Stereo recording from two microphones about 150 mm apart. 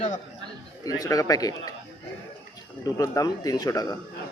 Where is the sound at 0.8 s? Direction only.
25° left (ahead or behind).